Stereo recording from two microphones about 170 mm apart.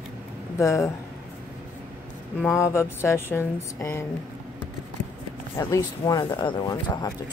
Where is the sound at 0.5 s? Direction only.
15° left (ahead or behind).